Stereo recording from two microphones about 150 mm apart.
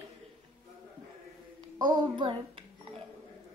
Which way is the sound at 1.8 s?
30° right (ahead or behind).